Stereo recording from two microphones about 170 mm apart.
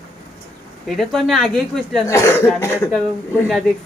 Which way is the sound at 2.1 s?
15° left (ahead or behind).